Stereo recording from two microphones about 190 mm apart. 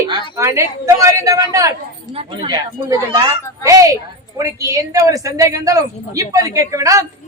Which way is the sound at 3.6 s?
20° right (ahead or behind).